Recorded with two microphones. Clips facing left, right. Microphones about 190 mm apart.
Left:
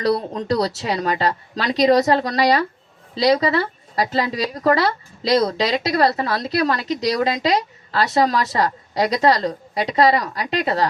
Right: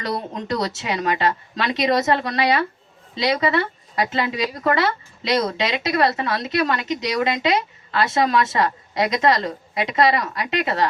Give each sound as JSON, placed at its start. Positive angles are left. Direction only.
{"t": 0.0, "sound": "a woman's voice", "side_deg": 35}